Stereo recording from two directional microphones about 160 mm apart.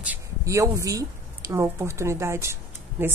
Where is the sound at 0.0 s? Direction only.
15° right (ahead or behind).